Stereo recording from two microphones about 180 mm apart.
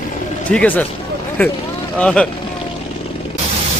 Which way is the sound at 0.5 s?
10° left (ahead or behind).